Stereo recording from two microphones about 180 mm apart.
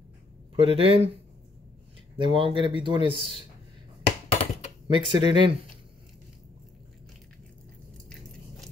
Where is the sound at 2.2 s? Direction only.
30° right (ahead or behind).